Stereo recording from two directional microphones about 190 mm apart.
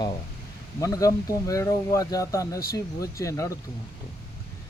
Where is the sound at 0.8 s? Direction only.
20° left (ahead or behind).